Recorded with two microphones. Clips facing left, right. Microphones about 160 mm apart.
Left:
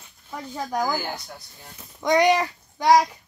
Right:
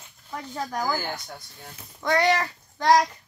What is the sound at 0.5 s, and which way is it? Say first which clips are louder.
Speech: left 2 dB; 15° left (ahead or behind).